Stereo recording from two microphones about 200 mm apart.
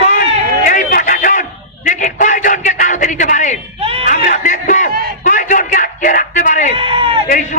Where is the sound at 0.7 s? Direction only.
40° left (ahead or behind).